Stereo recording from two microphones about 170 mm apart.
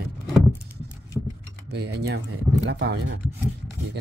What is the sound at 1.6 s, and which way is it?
Speech, 80° right.